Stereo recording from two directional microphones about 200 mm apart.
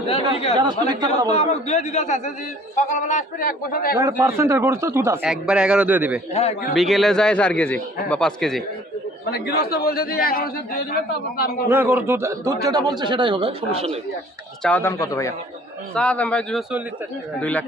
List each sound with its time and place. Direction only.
0.5 s a man's voice: 20° right (ahead or behind)
1.3 s a man's voice: 35° left (ahead or behind)
4.0 s a man's voice: 15° right (ahead or behind)
6.4 s a man's voice: 30° left (ahead or behind)
6.7 s speech: centre (ahead or behind)
9.3 s a man's voice: 55° left (ahead or behind)
11.7 s a man's voice: 10° right (ahead or behind); by 13.9 s 30° right (ahead or behind)
14.6 s speech: 10° left (ahead or behind)
16.0 s speech: 5° left (ahead or behind)